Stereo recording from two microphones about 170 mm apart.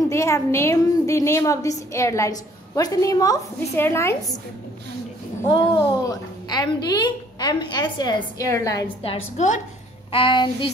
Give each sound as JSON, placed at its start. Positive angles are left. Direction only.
{"t": 0.1, "sound": "a woman's voice", "side_deg": 15}
{"t": 5.4, "sound": "a woman's voice", "side_deg": 25}
{"t": 9.0, "sound": "a woman's voice", "side_deg": 40}